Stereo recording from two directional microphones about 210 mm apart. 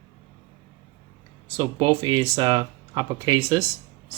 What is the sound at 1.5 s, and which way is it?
Speech, 20° right (ahead or behind).